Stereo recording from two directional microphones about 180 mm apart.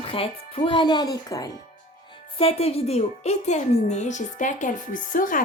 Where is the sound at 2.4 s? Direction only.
35° left (ahead or behind).